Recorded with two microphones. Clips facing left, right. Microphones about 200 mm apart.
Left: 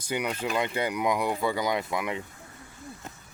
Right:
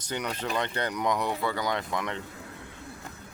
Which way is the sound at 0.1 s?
10° left (ahead or behind).